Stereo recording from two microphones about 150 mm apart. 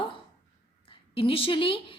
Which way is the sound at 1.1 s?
35° left (ahead or behind).